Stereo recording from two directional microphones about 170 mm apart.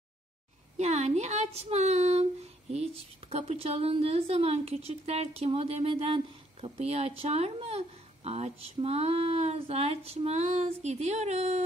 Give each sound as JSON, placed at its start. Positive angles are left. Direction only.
{"t": 0.7, "sound": "a woman's voice", "side_deg": -40}